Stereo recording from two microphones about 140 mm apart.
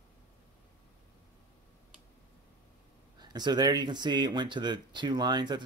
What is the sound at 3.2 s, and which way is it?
Speech, 30° right (ahead or behind).